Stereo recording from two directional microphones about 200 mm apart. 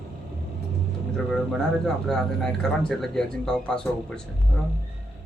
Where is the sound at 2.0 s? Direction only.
Centre (ahead or behind).